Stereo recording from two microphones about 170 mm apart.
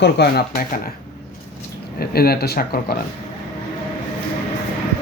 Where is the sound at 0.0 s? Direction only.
70° left (ahead or behind).